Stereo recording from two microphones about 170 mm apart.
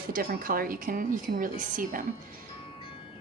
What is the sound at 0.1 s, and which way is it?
A woman's voice, 55° right (ahead or behind).